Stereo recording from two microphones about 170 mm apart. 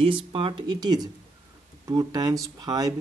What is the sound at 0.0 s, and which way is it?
Speech, 30° right (ahead or behind).